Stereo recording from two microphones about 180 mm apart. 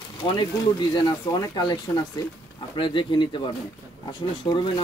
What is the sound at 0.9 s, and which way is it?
Speech, 25° left (ahead or behind).